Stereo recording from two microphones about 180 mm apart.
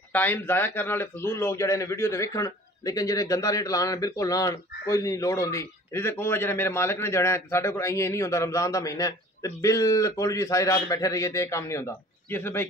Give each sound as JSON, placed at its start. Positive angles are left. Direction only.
{"t": 0.1, "sound": "a man's voice", "side_deg": 10}